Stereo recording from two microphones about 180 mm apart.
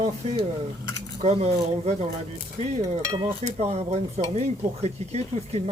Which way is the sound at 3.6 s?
35° right (ahead or behind).